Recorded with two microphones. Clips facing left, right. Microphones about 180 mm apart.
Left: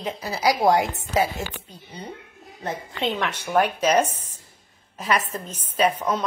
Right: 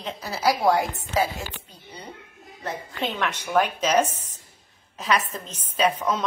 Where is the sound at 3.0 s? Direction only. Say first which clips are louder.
Left 2 dB; 10° left (ahead or behind).